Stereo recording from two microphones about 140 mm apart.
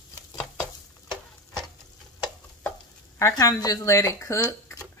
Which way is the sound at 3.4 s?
25° left (ahead or behind).